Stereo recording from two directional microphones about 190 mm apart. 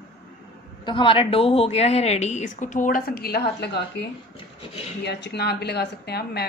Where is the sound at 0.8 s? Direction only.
25° left (ahead or behind); by 3.8 s 60° left (ahead or behind).